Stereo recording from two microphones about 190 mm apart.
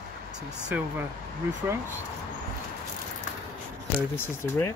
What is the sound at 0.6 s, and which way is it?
Speech, 10° right (ahead or behind).